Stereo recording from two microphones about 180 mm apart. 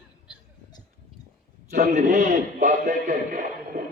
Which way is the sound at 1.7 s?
50° right (ahead or behind).